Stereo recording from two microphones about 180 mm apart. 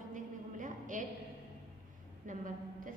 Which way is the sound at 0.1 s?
45° right (ahead or behind).